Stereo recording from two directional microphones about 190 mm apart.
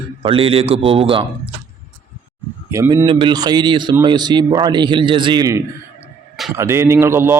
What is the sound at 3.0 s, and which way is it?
A man's voice, 25° right (ahead or behind).